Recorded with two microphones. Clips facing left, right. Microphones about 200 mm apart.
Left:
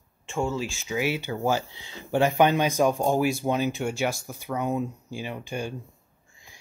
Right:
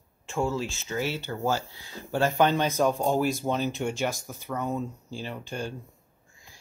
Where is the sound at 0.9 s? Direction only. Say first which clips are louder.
Left 4 dB; 10° left (ahead or behind).